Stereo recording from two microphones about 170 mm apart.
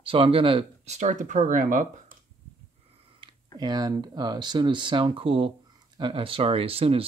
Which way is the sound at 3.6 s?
25° right (ahead or behind).